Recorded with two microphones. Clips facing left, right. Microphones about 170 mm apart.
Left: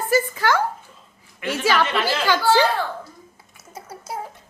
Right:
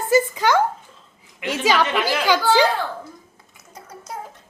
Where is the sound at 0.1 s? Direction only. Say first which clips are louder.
Right 3 dB; 20° right (ahead or behind).